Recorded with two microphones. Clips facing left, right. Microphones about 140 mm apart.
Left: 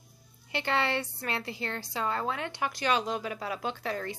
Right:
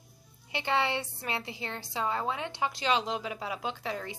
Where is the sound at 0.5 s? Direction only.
15° right (ahead or behind).